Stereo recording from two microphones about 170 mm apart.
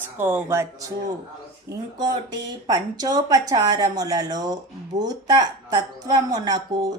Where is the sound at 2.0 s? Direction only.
20° right (ahead or behind).